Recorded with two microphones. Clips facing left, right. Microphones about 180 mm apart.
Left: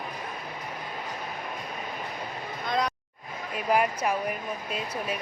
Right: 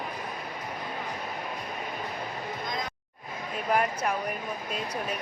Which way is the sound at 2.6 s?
70° left (ahead or behind).